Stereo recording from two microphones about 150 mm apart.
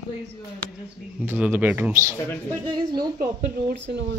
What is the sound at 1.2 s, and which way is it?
Speech, 10° right (ahead or behind).